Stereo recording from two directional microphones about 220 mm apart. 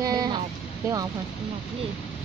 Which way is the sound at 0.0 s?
15° right (ahead or behind).